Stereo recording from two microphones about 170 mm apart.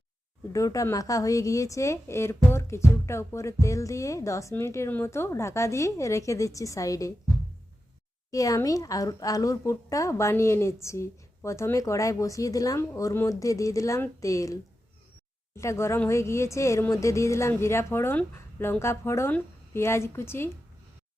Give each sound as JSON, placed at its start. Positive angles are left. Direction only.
{"t": 0.5, "sound": "a woman's voice", "side_deg": 20}
{"t": 8.3, "sound": "a woman's voice", "side_deg": 20}